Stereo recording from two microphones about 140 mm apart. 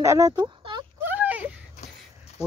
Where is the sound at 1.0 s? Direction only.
10° right (ahead or behind).